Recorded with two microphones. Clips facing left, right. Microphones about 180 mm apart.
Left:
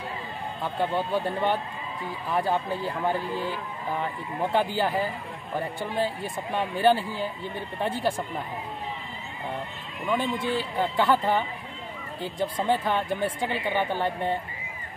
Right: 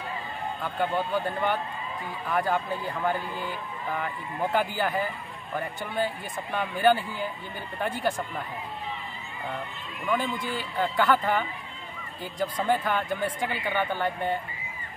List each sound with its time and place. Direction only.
0.6 s speech: 30° left (ahead or behind)
10.0 s speech: 25° left (ahead or behind)